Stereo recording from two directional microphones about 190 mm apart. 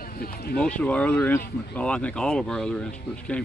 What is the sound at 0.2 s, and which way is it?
Speech, 55° left (ahead or behind).